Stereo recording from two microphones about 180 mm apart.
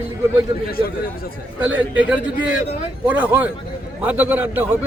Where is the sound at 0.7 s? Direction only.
55° left (ahead or behind).